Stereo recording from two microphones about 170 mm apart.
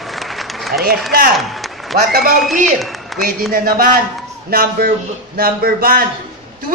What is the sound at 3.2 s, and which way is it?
Speech, 55° right (ahead or behind).